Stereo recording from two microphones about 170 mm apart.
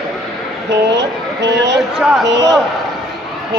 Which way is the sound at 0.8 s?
90° right.